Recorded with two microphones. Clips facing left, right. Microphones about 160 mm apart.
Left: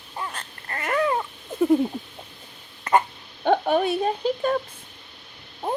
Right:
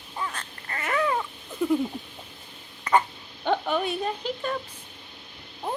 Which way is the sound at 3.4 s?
50° left (ahead or behind).